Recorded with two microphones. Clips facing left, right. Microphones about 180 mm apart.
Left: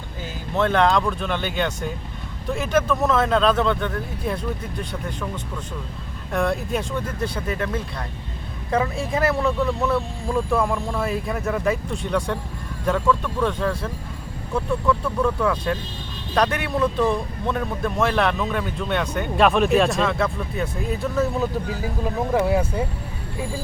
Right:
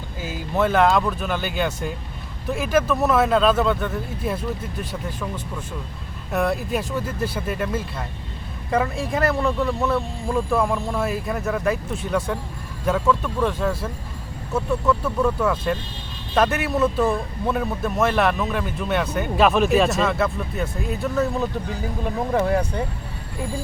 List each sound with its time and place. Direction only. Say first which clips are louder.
0.2 s speech: right 1 dB; 5° right (ahead or behind)
6.3 s speech: even; 5° right (ahead or behind)